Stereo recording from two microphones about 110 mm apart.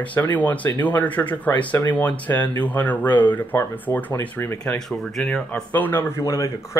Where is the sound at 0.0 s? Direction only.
15° left (ahead or behind).